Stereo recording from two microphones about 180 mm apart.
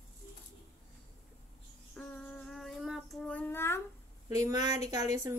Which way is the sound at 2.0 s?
5° left (ahead or behind).